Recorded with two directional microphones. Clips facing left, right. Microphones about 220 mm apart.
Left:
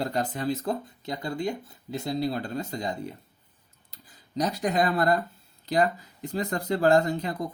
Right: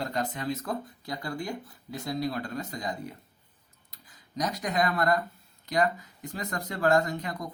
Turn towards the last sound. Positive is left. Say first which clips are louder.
# left 4 dB
turn(degrees=30)  # may be behind; listen again after turning